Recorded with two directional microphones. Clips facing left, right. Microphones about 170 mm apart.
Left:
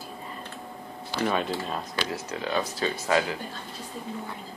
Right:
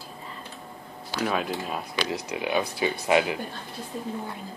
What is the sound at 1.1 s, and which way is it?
Speech, 5° right (ahead or behind).